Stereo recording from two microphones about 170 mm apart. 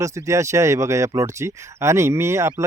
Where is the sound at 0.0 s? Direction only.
15° right (ahead or behind).